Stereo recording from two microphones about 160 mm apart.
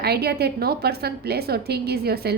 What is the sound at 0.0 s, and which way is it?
A woman's voice, 85° right.